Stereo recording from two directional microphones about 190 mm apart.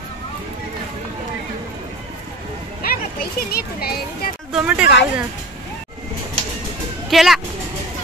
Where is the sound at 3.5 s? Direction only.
55° left (ahead or behind).